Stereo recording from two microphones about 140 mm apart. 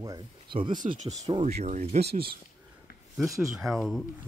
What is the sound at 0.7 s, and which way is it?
Speech, 65° right (ahead or behind).